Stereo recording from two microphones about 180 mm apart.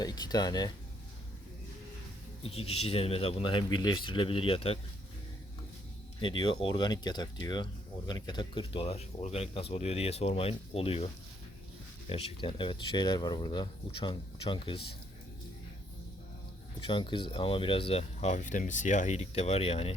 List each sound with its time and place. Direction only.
0.0 s speech: 20° left (ahead or behind)
2.4 s speech: 35° left (ahead or behind)
6.1 s speech: 25° left (ahead or behind)
16.8 s speech: 25° left (ahead or behind)